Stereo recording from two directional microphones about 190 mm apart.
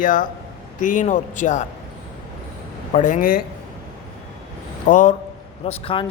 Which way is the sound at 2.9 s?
40° left (ahead or behind).